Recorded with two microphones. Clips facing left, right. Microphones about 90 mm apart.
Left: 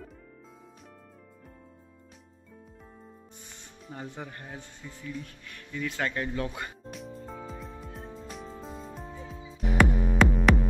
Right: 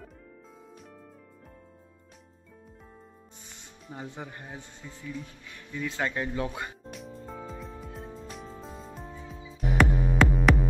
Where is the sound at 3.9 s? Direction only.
10° right (ahead or behind).